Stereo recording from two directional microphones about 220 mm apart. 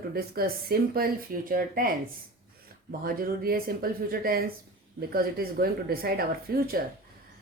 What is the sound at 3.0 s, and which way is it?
Speech, 40° right (ahead or behind).